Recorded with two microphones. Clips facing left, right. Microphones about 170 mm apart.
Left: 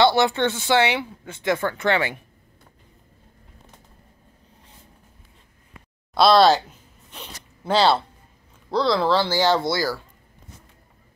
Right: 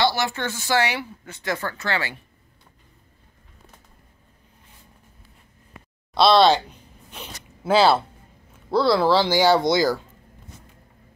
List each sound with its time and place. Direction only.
0.4 s speech: 25° left (ahead or behind)
6.1 s speech: centre (ahead or behind); by 9.9 s 20° right (ahead or behind)